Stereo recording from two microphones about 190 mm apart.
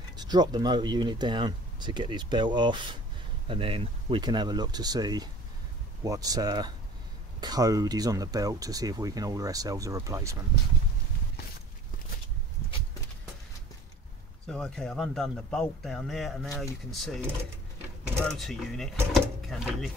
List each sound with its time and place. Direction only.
0.2 s speech: 20° right (ahead or behind)
14.5 s speech: 5° left (ahead or behind)
18.3 s speech: centre (ahead or behind)